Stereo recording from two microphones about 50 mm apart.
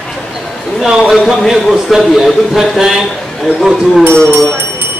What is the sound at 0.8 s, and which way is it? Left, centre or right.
A man's voice, centre.